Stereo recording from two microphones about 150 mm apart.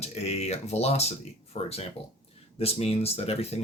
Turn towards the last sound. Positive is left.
turn(degrees=40)  # may be behind; listen again after turning